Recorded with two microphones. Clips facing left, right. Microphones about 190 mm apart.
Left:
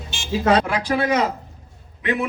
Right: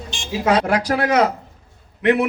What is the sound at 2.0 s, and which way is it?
Speech, 70° right (ahead or behind).